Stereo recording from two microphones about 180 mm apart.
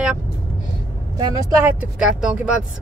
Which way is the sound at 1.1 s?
20° right (ahead or behind).